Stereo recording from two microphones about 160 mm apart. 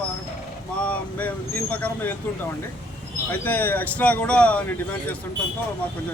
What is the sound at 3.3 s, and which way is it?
Speech, 10° left (ahead or behind).